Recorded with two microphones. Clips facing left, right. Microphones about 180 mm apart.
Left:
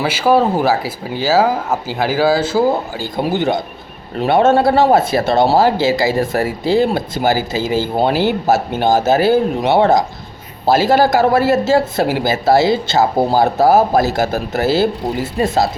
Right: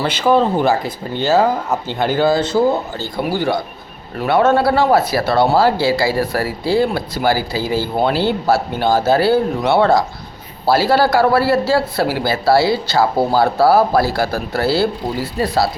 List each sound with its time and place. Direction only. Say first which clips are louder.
0.0 s speech: left 1 dB; 5° left (ahead or behind)
3.2 s speech: left 2 dB; 20° left (ahead or behind)